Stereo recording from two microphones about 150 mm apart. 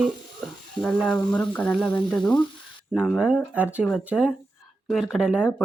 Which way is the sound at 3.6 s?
10° right (ahead or behind).